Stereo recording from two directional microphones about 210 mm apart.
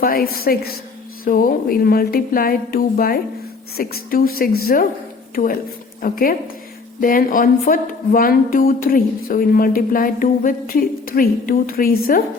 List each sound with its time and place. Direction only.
0.0 s speech: 45° left (ahead or behind)